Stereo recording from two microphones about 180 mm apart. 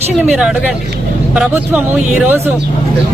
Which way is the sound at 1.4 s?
10° right (ahead or behind).